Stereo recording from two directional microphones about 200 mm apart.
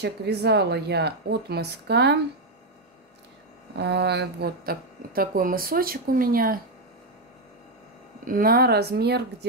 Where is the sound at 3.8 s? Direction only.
55° right (ahead or behind).